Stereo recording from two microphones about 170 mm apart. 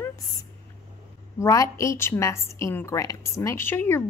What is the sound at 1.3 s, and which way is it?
A woman's voice, 20° left (ahead or behind).